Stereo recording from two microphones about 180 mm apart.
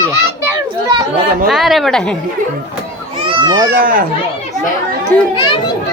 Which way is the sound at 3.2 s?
25° right (ahead or behind).